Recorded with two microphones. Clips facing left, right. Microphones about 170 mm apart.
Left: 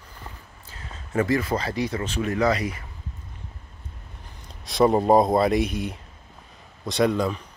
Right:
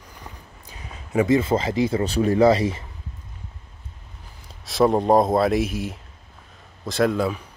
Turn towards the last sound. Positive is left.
turn(degrees=-5)  # may be behind; listen again after turning